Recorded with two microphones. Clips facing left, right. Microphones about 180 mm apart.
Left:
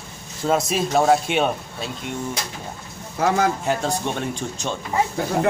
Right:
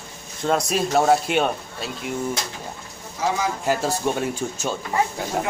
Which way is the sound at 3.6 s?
5° right (ahead or behind).